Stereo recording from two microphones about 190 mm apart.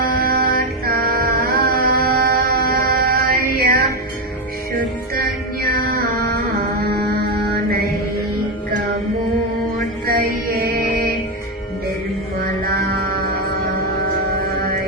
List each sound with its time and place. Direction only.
0.0 s mantra: 50° right (ahead or behind)
5.6 s music: 50° right (ahead or behind)
9.7 s mantra: 50° right (ahead or behind)
12.7 s music: 50° right (ahead or behind)